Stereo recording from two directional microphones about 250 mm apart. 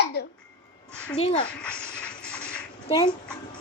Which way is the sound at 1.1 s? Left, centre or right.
Left.